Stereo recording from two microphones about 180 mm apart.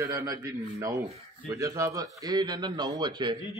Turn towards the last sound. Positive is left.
turn(degrees=-25)  # may be behind; listen again after turning